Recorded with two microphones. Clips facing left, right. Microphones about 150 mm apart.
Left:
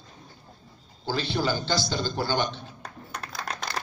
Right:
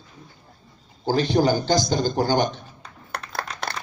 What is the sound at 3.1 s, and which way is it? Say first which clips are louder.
Computer keyboard: right 7 dB; 65° right (ahead or behind).